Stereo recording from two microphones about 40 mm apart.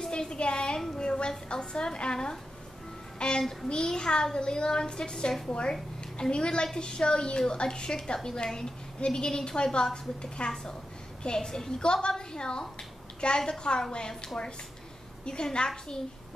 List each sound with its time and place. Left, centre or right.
0.0 s a woman's voice: centre